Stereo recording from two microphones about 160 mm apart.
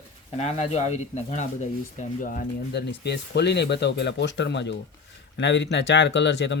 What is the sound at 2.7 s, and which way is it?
Speech, 90° left.